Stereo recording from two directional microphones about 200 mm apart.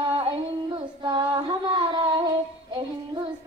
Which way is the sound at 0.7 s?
25° right (ahead or behind).